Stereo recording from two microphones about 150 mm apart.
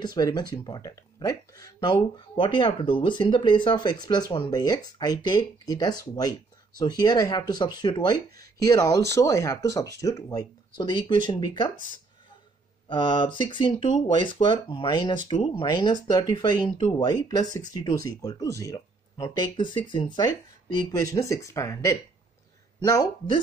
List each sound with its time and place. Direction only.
0.0 s speech: 30° left (ahead or behind)
12.8 s speech: 30° left (ahead or behind)